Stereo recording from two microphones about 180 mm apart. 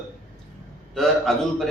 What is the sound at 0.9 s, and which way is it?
Speech, centre (ahead or behind).